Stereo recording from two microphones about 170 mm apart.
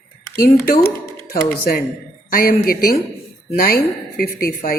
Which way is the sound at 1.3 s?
60° left (ahead or behind).